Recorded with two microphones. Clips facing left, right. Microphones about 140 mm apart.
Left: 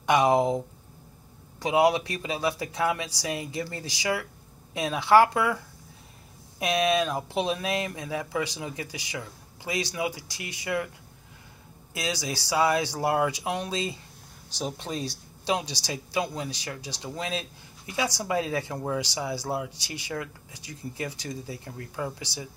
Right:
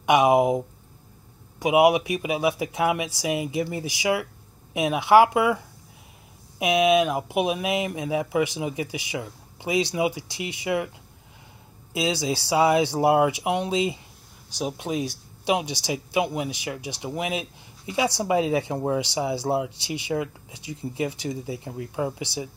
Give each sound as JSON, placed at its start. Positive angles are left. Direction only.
{"t": 0.0, "sound": "speech", "side_deg": -15}
{"t": 6.6, "sound": "speech", "side_deg": -15}
{"t": 11.9, "sound": "speech", "side_deg": -20}